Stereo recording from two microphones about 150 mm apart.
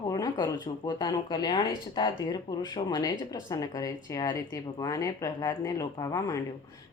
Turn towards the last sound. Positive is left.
turn(degrees=20)  # may be behind; listen again after turning